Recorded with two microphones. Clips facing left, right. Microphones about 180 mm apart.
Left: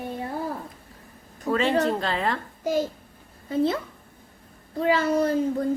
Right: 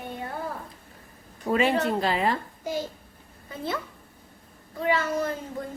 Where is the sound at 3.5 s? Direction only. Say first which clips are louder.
Left 9 dB; 30° left (ahead or behind).